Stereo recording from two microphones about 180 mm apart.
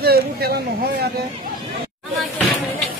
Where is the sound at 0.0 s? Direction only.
60° right (ahead or behind).